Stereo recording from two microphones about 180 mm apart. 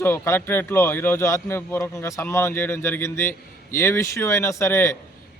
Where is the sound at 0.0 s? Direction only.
15° left (ahead or behind).